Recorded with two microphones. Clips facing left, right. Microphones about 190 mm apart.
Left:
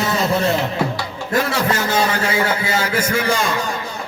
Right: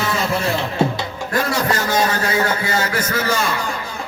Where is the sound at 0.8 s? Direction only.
25° right (ahead or behind).